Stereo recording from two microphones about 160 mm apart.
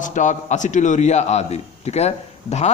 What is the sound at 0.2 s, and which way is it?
A man's voice, 50° left (ahead or behind).